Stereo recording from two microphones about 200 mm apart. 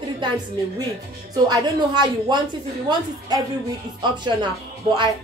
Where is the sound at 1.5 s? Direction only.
20° right (ahead or behind).